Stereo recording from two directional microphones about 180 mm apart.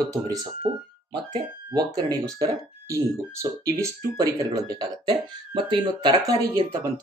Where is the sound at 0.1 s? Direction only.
20° right (ahead or behind).